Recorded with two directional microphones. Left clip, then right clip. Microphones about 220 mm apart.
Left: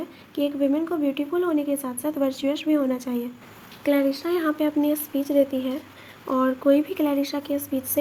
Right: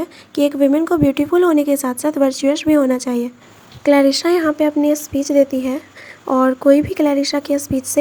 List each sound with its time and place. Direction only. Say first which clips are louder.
0.0 s a woman's voice: right 9 dB; 30° right (ahead or behind)